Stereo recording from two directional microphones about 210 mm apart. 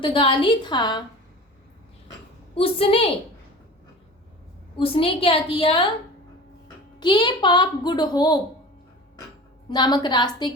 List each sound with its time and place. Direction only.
0.0 s a child's voice: 25° left (ahead or behind)
2.6 s a child's voice: 25° left (ahead or behind)
4.8 s a child's voice: 25° left (ahead or behind)
7.0 s a child's voice: 20° left (ahead or behind)
9.6 s a child's voice: 20° left (ahead or behind)